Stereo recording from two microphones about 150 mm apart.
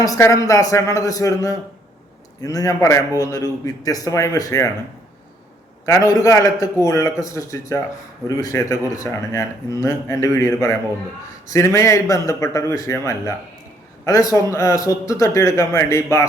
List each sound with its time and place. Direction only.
0.0 s speech: 20° left (ahead or behind)
5.8 s speech: 20° left (ahead or behind)